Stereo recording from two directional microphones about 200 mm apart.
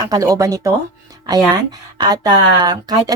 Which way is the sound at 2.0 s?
20° right (ahead or behind).